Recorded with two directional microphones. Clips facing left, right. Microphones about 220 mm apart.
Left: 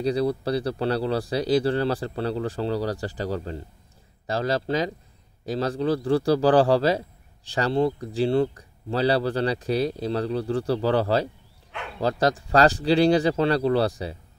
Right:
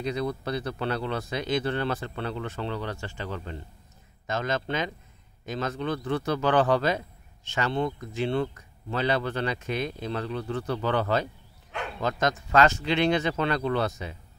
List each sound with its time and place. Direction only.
0.0 s a man's voice: 35° left (ahead or behind)